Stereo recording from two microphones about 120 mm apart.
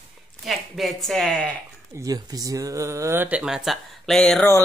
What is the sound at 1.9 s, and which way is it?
Speech, 30° right (ahead or behind).